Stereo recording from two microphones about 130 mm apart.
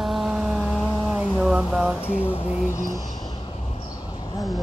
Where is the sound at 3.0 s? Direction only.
30° left (ahead or behind).